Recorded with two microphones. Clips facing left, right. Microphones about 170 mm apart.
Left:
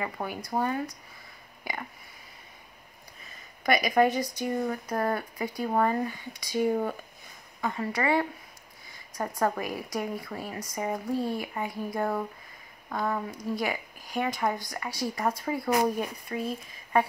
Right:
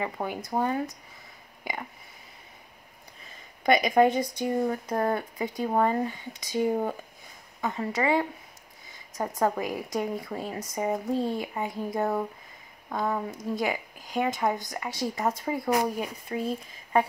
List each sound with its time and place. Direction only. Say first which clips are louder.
0.0 s speech: right 2 dB; 20° right (ahead or behind)
3.6 s speech: right 2 dB; 25° right (ahead or behind)
9.4 s speech: right 2 dB; 20° right (ahead or behind)